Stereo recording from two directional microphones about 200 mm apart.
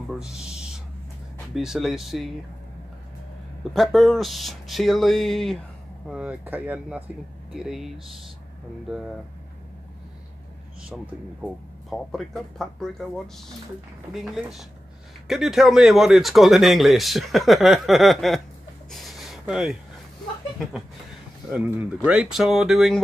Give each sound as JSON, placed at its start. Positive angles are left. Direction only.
{"t": 0.2, "sound": "a sound", "side_deg": -5}
{"t": 1.5, "sound": "speech", "side_deg": 0}
{"t": 3.7, "sound": "speech", "side_deg": 0}
{"t": 11.9, "sound": "speech", "side_deg": 0}
{"t": 14.2, "sound": "speech", "side_deg": 0}
{"t": 18.9, "sound": "a sound", "side_deg": 0}
{"t": 21.5, "sound": "speech", "side_deg": -10}